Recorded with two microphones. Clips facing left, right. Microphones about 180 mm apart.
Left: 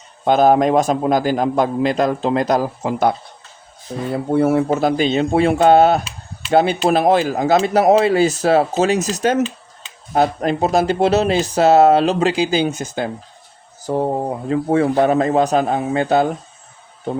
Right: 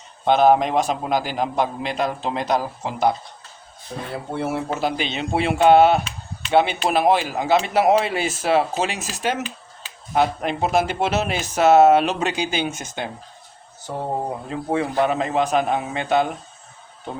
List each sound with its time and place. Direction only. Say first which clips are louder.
0.3 s a man's voice: left 3 dB; 45° left (ahead or behind)
4.4 s speech: left 9 dB; 50° left (ahead or behind)